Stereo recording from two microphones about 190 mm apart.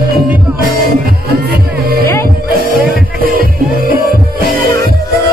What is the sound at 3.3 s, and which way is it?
Music, 50° right (ahead or behind).